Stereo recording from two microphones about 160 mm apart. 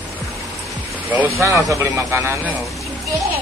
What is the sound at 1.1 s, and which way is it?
Speech, 15° right (ahead or behind).